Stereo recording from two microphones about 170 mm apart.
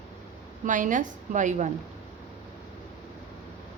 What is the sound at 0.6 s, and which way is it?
A woman's voice, 50° right (ahead or behind).